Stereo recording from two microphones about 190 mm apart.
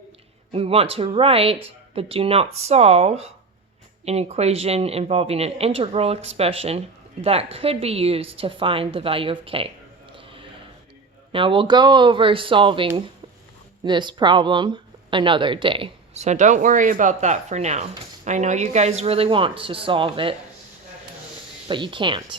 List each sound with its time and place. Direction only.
0.5 s speech: 30° right (ahead or behind)
10.2 s a sound: 30° right (ahead or behind)
11.3 s speech: 25° right (ahead or behind)
21.7 s speech: 25° right (ahead or behind)